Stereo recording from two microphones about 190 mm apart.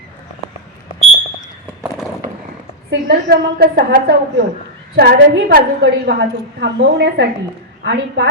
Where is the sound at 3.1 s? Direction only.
55° right (ahead or behind).